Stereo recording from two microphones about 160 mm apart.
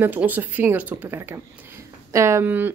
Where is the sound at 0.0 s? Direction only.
10° right (ahead or behind).